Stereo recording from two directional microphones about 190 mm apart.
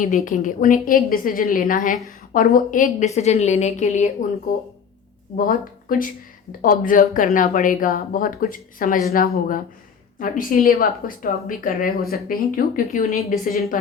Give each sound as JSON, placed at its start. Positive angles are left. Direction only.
{"t": 0.3, "sound": "a woman's voice", "side_deg": 45}
{"t": 4.5, "sound": "speech", "side_deg": 45}